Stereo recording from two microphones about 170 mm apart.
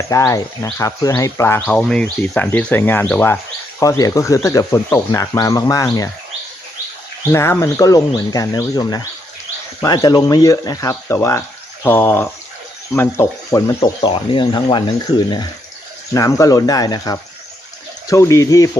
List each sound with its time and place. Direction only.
0.1 s speech: 20° left (ahead or behind)
7.3 s speech: 15° left (ahead or behind)
16.1 s speech: 20° left (ahead or behind)